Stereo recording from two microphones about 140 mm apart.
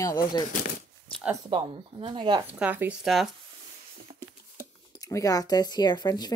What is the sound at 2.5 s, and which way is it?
Speech, 10° right (ahead or behind).